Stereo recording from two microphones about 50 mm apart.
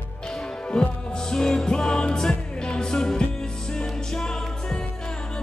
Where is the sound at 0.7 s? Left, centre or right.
Centre.